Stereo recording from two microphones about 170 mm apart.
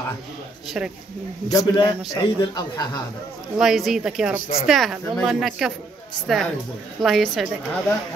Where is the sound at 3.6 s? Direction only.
Centre (ahead or behind).